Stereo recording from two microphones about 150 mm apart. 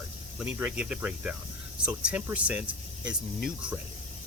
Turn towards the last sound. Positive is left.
turn(degrees=-5)  # may be behind; listen again after turning